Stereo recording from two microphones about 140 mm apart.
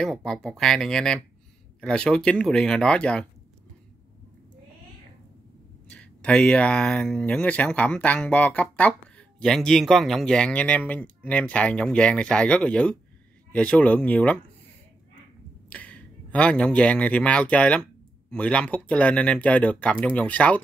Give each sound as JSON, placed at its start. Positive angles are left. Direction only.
{"t": 0.0, "sound": "speech", "side_deg": 5}
{"t": 5.9, "sound": "speech", "side_deg": 10}
{"t": 15.7, "sound": "speech", "side_deg": 10}